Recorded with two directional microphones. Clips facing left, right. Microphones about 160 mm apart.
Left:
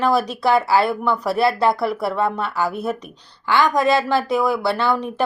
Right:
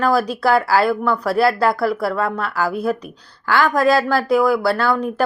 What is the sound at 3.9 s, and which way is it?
Speech, 20° left (ahead or behind).